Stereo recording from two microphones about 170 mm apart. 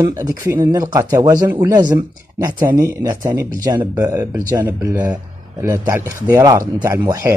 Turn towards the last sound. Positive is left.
turn(degrees=-20)  # may be behind; listen again after turning